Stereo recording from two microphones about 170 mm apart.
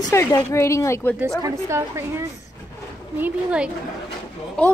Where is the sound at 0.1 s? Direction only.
15° left (ahead or behind).